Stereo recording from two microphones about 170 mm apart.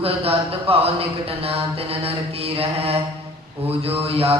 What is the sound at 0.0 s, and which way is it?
A man's voice, 35° right (ahead or behind).